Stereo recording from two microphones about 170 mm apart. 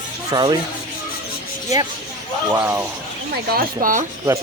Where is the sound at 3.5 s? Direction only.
55° right (ahead or behind).